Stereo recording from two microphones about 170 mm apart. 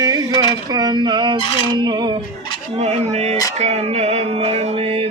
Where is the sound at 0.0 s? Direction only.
20° right (ahead or behind).